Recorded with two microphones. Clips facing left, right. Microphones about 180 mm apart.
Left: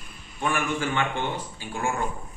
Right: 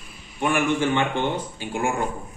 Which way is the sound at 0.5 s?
25° right (ahead or behind).